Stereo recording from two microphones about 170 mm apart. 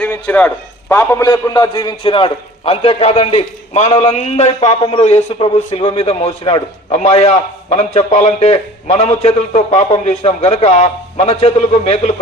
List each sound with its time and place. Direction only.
0.0 s a man's voice: 10° left (ahead or behind); by 12.1 s 35° left (ahead or behind)